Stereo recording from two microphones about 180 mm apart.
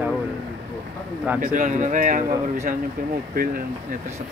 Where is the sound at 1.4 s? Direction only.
45° right (ahead or behind).